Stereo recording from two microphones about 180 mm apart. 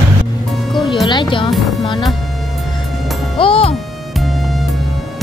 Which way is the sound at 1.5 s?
Centre (ahead or behind).